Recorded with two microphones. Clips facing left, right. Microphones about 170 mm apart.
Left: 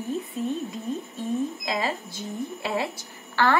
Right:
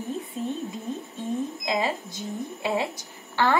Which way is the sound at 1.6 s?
20° right (ahead or behind).